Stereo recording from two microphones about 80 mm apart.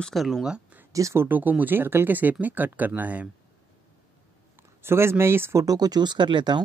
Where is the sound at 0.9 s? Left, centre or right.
Right.